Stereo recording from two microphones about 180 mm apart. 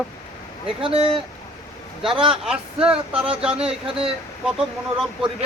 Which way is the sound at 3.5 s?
35° right (ahead or behind).